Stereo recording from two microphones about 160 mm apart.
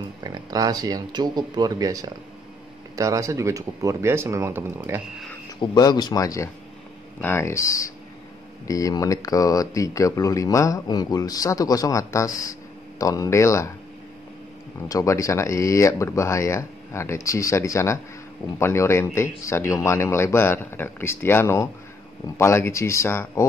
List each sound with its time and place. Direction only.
0.2 s speech: 25° right (ahead or behind)
5.6 s speech: 25° left (ahead or behind)
14.9 s speech: 20° left (ahead or behind)